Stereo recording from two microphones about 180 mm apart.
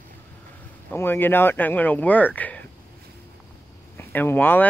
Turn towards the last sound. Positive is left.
turn(degrees=10)  # may be behind; listen again after turning